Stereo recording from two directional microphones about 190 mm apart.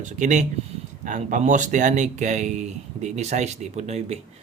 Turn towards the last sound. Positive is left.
turn(degrees=-35)  # may be behind; listen again after turning